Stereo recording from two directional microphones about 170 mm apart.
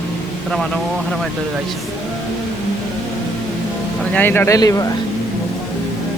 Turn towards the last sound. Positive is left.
turn(degrees=20)  # may be behind; listen again after turning